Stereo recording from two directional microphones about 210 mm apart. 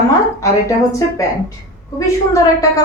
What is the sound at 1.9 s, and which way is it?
Speech, 15° left (ahead or behind).